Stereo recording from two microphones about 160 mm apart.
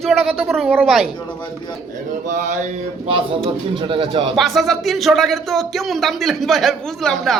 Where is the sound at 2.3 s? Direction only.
50° right (ahead or behind).